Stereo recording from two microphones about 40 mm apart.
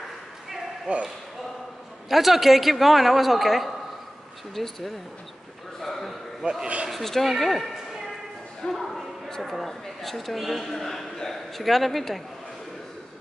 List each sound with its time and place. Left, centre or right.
0.9 s speech: right
2.0 s a man's voice: centre
5.8 s a sound: centre
6.4 s a man's voice: right
6.9 s a man's voice: centre